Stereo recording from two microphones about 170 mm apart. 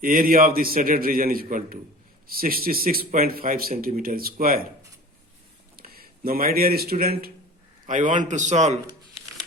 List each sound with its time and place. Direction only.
0.0 s speech: 55° right (ahead or behind)
5.7 s a sound: 60° right (ahead or behind)
7.0 s speech: 60° right (ahead or behind)
7.9 s a man's voice: 50° right (ahead or behind)